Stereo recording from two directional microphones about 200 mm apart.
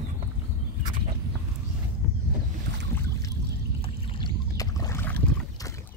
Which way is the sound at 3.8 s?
25° left (ahead or behind).